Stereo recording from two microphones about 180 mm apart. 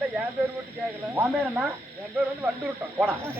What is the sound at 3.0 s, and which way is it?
Speech, 15° right (ahead or behind).